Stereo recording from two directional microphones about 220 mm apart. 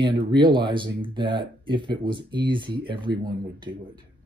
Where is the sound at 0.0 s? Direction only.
20° right (ahead or behind).